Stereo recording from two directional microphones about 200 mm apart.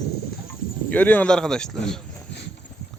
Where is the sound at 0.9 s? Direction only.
5° left (ahead or behind).